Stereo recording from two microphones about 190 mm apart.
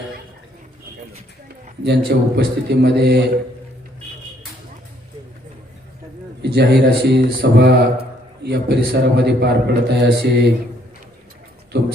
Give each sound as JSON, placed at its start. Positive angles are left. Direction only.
{"t": 1.8, "sound": "a man's voice", "side_deg": -60}
{"t": 6.4, "sound": "a man's voice", "side_deg": -60}
{"t": 11.7, "sound": "a man's voice", "side_deg": -65}